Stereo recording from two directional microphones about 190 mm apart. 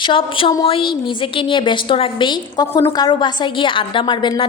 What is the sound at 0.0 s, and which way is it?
A woman's voice, 25° left (ahead or behind).